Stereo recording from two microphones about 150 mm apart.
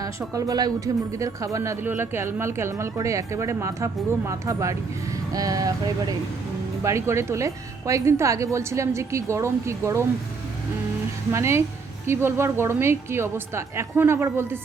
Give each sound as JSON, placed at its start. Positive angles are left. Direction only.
{"t": 0.3, "sound": "a woman's voice", "side_deg": -25}
{"t": 11.3, "sound": "a woman's voice", "side_deg": -20}